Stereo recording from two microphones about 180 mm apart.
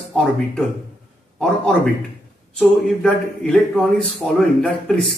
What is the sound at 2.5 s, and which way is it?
A man's voice, 5° left (ahead or behind).